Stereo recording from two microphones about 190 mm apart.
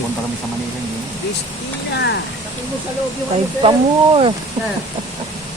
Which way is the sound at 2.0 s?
60° left (ahead or behind).